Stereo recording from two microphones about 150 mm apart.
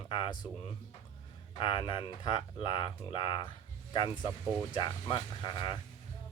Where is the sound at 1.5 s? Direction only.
35° left (ahead or behind).